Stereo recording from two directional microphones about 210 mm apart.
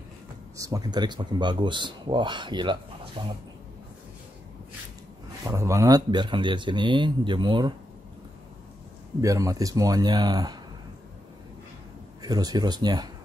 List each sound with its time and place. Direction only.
0.6 s speech: 15° right (ahead or behind)
5.4 s speech: 15° right (ahead or behind)
9.2 s speech: 15° right (ahead or behind)
12.2 s speech: 20° right (ahead or behind)